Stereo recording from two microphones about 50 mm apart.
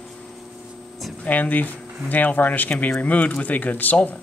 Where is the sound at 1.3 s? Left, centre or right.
Left.